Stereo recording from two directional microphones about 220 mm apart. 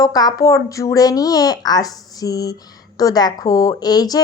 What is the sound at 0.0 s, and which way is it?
A woman's voice, 15° left (ahead or behind).